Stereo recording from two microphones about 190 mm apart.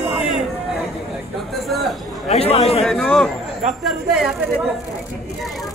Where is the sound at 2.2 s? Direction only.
30° left (ahead or behind).